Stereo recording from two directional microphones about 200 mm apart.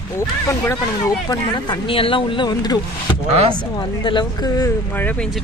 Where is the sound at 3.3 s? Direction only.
30° right (ahead or behind).